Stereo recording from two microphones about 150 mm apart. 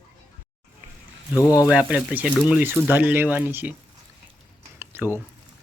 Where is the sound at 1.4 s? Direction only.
20° left (ahead or behind).